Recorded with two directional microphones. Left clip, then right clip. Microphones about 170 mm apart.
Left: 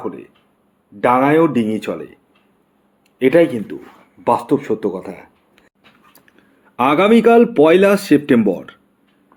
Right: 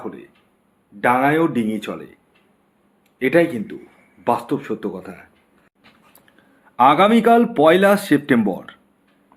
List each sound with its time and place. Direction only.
0.0 s a sound: 35° left (ahead or behind)
1.0 s a man's voice: 30° left (ahead or behind)
3.2 s a man's voice: 30° left (ahead or behind)
6.7 s speech: 20° left (ahead or behind)